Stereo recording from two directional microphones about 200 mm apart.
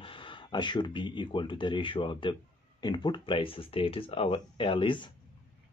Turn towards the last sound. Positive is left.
turn(degrees=25)  # may be behind; listen again after turning